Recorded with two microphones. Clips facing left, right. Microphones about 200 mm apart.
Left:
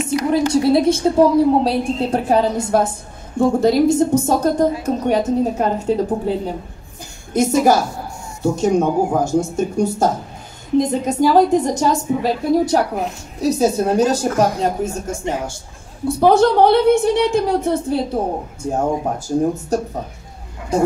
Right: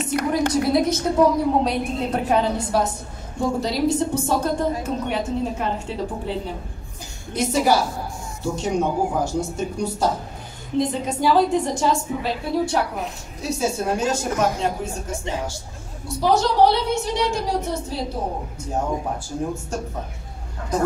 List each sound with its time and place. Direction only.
0.5 s a woman's voice: 30° left (ahead or behind); by 18.2 s 55° left (ahead or behind)
18.8 s a woman's voice: 40° left (ahead or behind)
20.7 s a woman's voice: 30° left (ahead or behind)